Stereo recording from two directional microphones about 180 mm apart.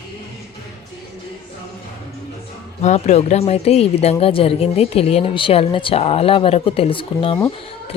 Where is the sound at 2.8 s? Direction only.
40° left (ahead or behind).